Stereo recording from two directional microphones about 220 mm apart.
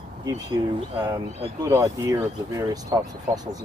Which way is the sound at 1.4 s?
15° right (ahead or behind).